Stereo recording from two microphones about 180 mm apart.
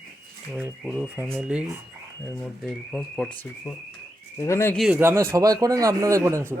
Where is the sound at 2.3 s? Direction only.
5° left (ahead or behind).